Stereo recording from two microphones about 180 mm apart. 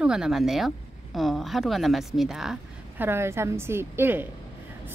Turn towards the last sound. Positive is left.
turn(degrees=-10)  # may be behind; listen again after turning